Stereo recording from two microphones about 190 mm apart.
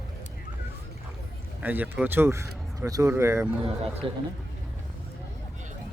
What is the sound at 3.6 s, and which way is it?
Speech, 30° right (ahead or behind).